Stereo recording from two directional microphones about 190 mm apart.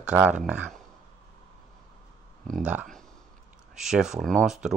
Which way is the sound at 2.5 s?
5° right (ahead or behind).